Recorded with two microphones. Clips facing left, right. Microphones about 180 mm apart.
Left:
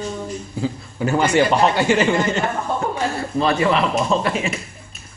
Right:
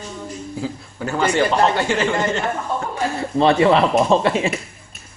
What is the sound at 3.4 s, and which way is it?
Speech, 25° right (ahead or behind).